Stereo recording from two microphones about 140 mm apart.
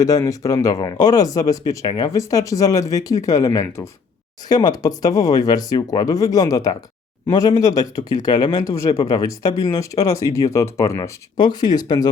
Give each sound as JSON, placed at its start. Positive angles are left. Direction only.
{"t": 0.0, "sound": "speech", "side_deg": 25}